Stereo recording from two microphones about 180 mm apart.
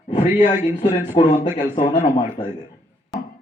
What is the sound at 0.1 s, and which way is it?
Speech, 40° left (ahead or behind).